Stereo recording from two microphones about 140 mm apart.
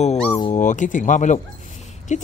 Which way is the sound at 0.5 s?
60° left (ahead or behind).